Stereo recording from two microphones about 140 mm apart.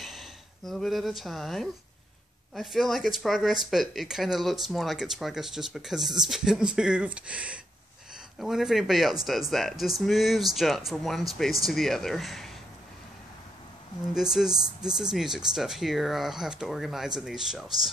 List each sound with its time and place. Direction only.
0.0 s speech: centre (ahead or behind)
14.1 s speech: 5° right (ahead or behind)